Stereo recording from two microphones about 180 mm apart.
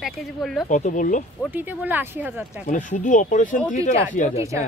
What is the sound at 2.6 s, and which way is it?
Speech, 45° left (ahead or behind).